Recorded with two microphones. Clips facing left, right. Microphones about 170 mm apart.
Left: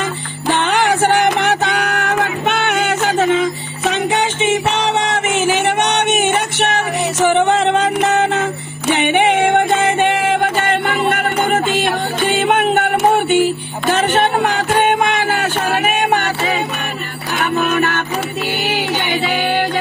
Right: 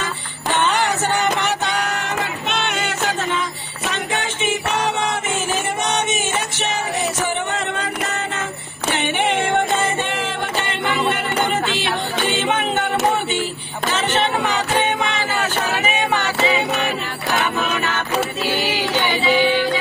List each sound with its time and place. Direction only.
0.7 s music: 60° left (ahead or behind)
10.6 s music: 45° left (ahead or behind)
13.9 s music: 50° left (ahead or behind)
17.4 s music: 55° left (ahead or behind)